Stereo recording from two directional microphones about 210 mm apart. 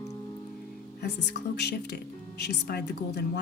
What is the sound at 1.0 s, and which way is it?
Speech, 50° left (ahead or behind).